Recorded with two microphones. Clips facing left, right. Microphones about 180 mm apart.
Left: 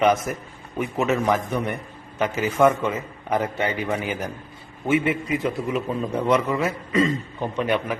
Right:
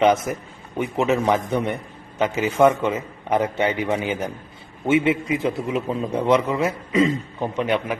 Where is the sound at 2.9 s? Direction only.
25° right (ahead or behind).